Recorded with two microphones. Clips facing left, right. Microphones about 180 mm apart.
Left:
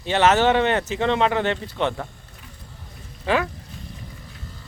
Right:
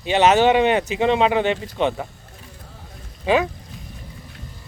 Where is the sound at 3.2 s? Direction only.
15° right (ahead or behind).